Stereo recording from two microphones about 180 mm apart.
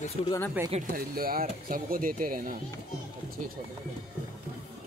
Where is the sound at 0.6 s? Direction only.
10° right (ahead or behind).